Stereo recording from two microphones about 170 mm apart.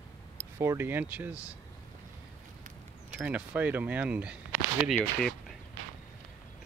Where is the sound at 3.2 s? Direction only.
10° right (ahead or behind).